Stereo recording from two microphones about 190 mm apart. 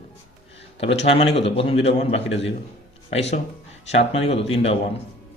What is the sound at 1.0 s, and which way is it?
A man's voice, 30° left (ahead or behind).